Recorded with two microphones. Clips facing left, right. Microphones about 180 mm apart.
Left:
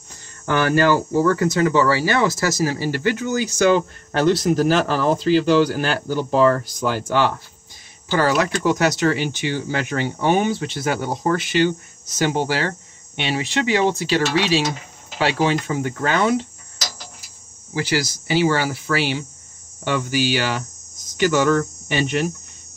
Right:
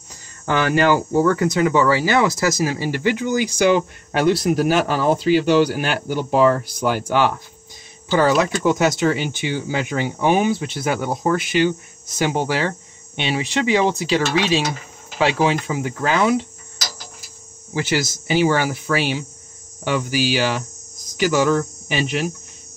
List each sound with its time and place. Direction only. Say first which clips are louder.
0.5 s speech: even; 20° right (ahead or behind)
15.2 s speech: right 1 dB; 15° right (ahead or behind)
17.7 s speech: right 1 dB; 25° right (ahead or behind); by 22.3 s 5° right (ahead or behind)